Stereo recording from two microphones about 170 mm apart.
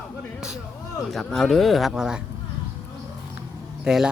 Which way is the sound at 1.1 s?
5° left (ahead or behind).